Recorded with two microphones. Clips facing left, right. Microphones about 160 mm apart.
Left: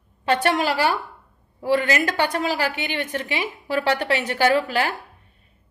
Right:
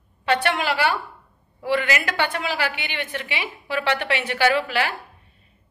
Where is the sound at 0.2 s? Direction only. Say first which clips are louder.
Left 2 dB; 40° left (ahead or behind).